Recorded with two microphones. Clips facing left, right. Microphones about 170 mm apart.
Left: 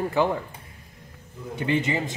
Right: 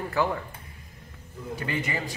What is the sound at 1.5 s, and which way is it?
Speech, 25° left (ahead or behind).